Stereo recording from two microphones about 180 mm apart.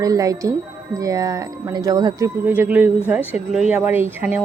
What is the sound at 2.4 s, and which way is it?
A woman's voice, 10° right (ahead or behind).